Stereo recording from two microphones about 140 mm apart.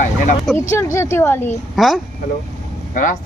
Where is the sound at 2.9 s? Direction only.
65° left (ahead or behind).